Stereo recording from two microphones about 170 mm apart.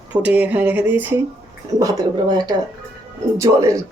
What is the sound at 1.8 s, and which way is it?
Speech, 20° right (ahead or behind).